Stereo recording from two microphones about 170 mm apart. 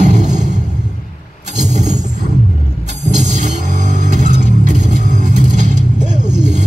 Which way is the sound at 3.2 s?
45° right (ahead or behind).